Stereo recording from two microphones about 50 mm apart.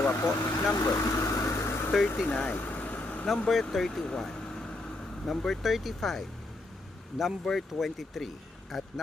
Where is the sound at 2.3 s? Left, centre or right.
Left.